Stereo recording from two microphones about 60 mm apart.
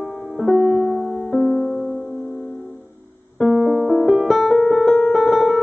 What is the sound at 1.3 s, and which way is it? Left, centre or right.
Music, centre.